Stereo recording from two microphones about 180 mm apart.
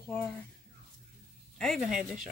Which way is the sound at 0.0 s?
5° left (ahead or behind).